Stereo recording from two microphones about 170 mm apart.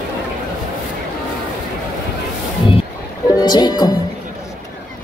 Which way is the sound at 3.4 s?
25° left (ahead or behind).